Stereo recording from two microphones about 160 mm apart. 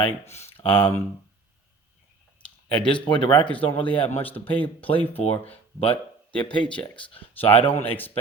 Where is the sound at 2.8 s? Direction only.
30° left (ahead or behind).